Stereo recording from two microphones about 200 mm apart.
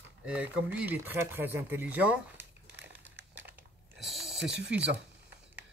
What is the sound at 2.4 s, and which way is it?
Crumpling, 60° right (ahead or behind).